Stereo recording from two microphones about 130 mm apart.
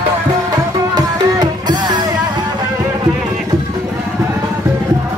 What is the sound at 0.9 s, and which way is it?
Music, 35° right (ahead or behind).